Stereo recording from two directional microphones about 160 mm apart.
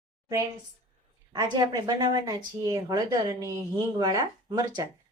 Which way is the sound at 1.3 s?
25° right (ahead or behind).